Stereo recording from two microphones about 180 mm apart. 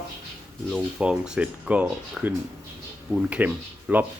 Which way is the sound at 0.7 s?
5° right (ahead or behind).